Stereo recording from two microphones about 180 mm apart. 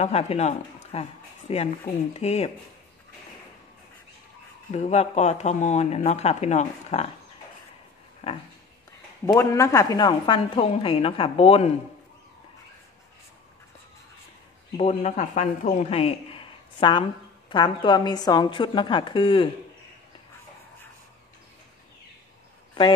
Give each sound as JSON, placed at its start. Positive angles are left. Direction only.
{"t": 0.0, "sound": "speech", "side_deg": 35}
{"t": 4.6, "sound": "speech", "side_deg": 40}
{"t": 8.2, "sound": "a sound", "side_deg": 35}
{"t": 9.2, "sound": "a woman's voice", "side_deg": 15}
{"t": 14.8, "sound": "a woman's voice", "side_deg": 40}